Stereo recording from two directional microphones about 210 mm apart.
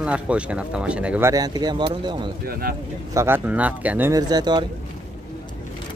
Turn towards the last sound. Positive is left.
turn(degrees=-20)  # may be behind; listen again after turning